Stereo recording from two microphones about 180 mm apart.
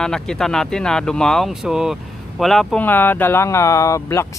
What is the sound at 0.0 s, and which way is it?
Speech, 5° left (ahead or behind).